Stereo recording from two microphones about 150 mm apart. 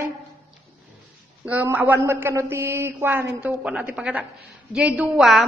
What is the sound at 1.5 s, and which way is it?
A man's voice, 10° right (ahead or behind).